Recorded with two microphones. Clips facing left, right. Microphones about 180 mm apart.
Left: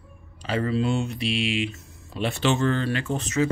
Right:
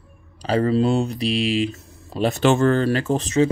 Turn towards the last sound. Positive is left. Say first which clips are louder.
# right 6 dB
turn(degrees=-30)  # may be behind; listen again after turning